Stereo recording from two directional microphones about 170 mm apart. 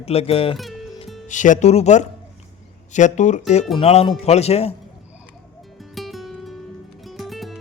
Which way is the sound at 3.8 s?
35° left (ahead or behind).